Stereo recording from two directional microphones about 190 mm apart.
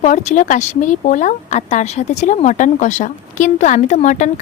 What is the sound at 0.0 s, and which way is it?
Speech, 40° left (ahead or behind).